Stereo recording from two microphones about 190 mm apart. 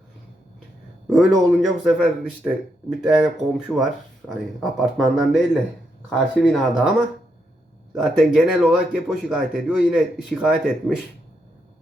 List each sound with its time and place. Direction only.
1.1 s speech: centre (ahead or behind)